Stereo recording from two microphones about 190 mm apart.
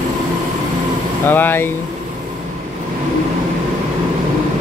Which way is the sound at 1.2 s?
10° left (ahead or behind).